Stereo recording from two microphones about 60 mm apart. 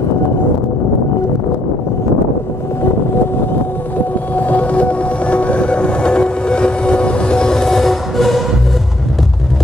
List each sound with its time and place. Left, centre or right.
4.4 s train: left; by 8.5 s centre